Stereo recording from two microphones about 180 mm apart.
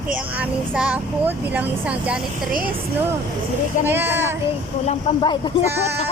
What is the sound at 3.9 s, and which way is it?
Speech, 15° right (ahead or behind).